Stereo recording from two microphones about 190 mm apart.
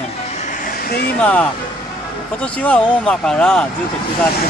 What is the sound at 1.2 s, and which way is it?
Speech, 10° left (ahead or behind).